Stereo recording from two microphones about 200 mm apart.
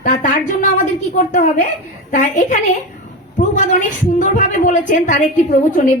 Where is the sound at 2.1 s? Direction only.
40° left (ahead or behind).